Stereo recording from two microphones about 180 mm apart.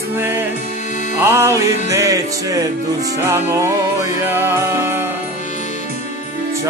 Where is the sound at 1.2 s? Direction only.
15° right (ahead or behind).